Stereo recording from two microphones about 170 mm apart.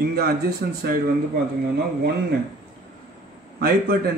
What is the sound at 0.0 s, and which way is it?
Speech, 65° right (ahead or behind).